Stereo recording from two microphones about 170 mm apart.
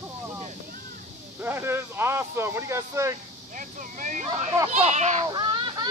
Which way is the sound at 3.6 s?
50° right (ahead or behind).